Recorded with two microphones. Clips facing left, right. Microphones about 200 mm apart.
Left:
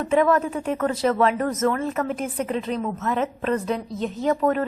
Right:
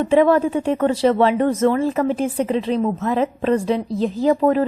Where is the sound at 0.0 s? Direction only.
30° right (ahead or behind).